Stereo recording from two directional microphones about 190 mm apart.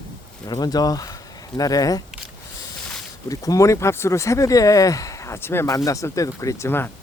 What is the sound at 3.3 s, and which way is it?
Speech, 20° left (ahead or behind).